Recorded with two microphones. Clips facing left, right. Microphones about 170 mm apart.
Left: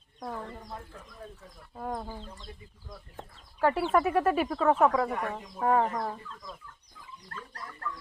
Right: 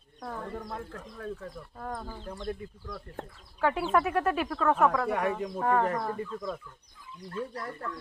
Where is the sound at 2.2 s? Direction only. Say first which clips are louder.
Right 11 dB; 60° right (ahead or behind).